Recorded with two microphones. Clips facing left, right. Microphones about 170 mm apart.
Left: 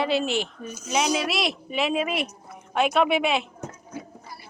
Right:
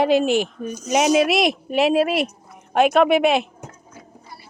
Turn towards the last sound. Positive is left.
turn(degrees=-30)  # may be behind; listen again after turning